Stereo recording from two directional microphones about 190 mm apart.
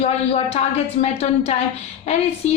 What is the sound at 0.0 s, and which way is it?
A woman's voice, 30° left (ahead or behind).